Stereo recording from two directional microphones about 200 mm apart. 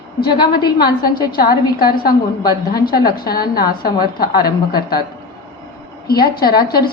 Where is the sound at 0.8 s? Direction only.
50° left (ahead or behind).